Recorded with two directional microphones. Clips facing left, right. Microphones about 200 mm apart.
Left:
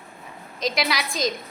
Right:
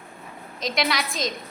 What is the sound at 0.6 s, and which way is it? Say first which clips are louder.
Speech: even; centre (ahead or behind).